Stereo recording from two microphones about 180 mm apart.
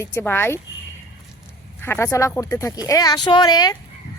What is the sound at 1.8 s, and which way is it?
Speech, 15° left (ahead or behind).